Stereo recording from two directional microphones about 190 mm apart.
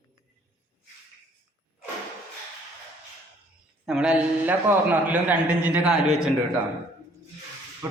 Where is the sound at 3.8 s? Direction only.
5° right (ahead or behind).